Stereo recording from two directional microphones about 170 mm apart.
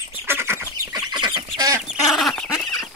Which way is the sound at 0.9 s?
25° right (ahead or behind).